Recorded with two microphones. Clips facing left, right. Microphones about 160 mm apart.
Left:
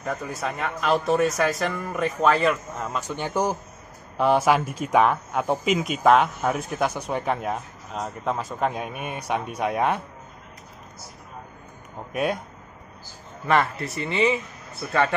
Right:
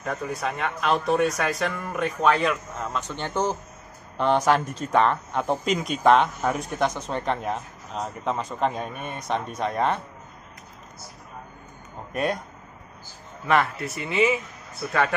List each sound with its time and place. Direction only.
0.0 s speech: centre (ahead or behind)
12.1 s speech: 5° left (ahead or behind)
13.5 s speech: centre (ahead or behind)